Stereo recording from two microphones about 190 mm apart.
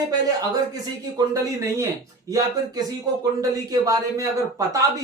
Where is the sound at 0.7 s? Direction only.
20° right (ahead or behind).